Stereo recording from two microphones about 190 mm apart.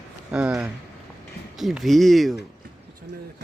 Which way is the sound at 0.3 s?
5° right (ahead or behind).